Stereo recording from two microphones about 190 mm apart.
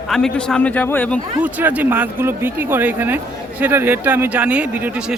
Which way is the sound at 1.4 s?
10° right (ahead or behind).